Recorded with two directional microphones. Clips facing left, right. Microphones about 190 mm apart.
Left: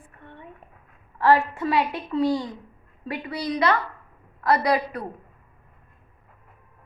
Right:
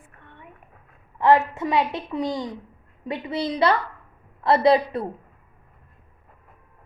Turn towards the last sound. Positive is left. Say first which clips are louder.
# right 5 dB
turn(degrees=-25)  # may be behind; listen again after turning